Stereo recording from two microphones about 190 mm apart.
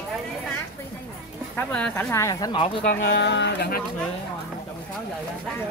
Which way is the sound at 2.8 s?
65° left (ahead or behind).